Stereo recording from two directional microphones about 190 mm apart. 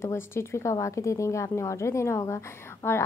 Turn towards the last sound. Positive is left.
turn(degrees=15)  # may be behind; listen again after turning